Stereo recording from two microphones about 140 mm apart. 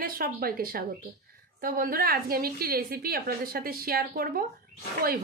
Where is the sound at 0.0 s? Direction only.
90° right.